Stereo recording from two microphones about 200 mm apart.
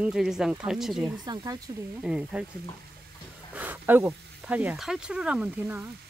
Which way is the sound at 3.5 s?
10° right (ahead or behind).